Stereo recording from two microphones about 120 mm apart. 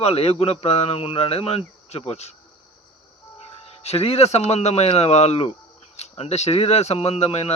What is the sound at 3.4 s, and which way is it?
A man's voice, 60° left (ahead or behind).